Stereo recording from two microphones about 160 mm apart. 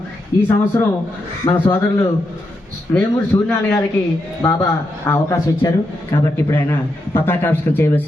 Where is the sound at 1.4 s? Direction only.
30° left (ahead or behind).